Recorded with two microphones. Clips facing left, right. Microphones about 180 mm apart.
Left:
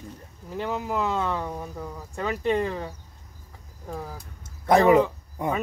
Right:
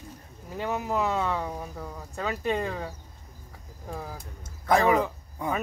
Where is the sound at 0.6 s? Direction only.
5° right (ahead or behind).